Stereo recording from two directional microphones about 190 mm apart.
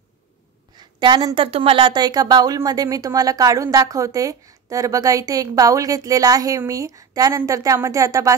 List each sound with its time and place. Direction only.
0.7 s a woman's voice: 25° right (ahead or behind)